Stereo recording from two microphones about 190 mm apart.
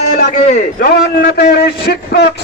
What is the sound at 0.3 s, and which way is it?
A man's voice, 45° left (ahead or behind).